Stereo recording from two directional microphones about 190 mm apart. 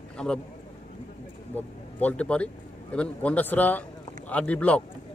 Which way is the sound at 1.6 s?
10° left (ahead or behind).